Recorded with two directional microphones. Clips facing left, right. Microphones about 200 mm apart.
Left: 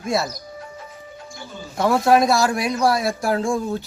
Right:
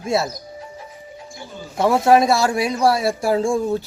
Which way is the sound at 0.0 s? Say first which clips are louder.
Right 2 dB; 25° right (ahead or behind).